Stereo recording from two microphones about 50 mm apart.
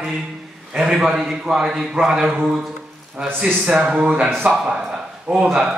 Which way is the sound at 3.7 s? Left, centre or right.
Right.